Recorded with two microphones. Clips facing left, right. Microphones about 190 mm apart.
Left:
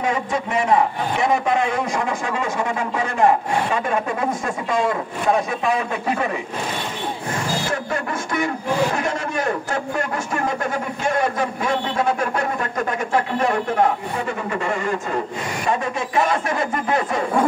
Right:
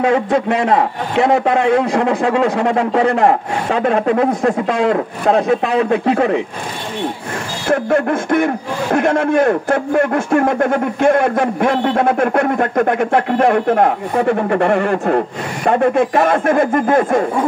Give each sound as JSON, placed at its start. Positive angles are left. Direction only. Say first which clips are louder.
{"t": 0.0, "sound": "a man's voice", "louder": "right 8 dB", "side_deg": -65}
{"t": 7.6, "sound": "a man's voice", "louder": "right 10 dB", "side_deg": -55}